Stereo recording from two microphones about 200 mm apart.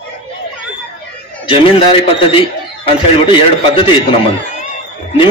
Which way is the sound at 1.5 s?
25° left (ahead or behind).